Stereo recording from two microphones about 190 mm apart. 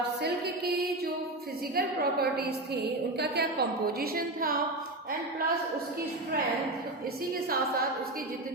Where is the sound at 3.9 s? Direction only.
50° right (ahead or behind).